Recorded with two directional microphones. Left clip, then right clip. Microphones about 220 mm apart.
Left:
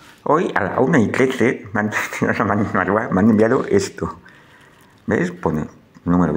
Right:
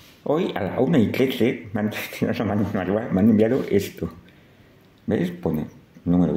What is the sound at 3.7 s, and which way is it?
Speech, 35° left (ahead or behind).